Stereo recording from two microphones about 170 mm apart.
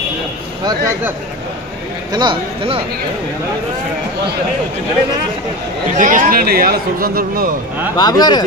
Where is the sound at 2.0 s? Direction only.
25° right (ahead or behind).